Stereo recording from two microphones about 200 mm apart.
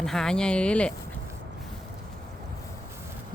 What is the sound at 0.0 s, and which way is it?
Speech, centre (ahead or behind).